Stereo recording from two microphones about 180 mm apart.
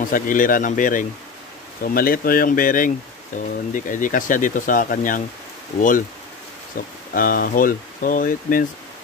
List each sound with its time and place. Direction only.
0.0 s speech: 50° left (ahead or behind)
7.2 s speech: 50° left (ahead or behind)